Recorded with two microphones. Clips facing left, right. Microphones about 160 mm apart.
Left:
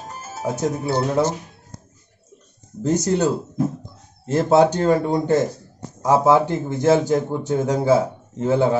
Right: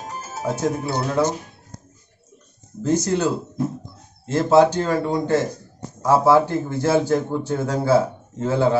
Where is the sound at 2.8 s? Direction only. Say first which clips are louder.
Left 1 dB; 15° left (ahead or behind).